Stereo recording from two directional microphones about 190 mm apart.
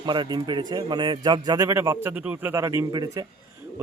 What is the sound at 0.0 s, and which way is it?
A man's voice, 25° right (ahead or behind).